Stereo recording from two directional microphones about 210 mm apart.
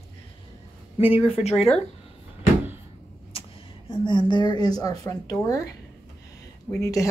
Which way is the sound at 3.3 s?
25° left (ahead or behind).